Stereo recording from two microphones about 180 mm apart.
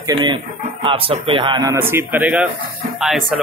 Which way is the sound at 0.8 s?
30° right (ahead or behind).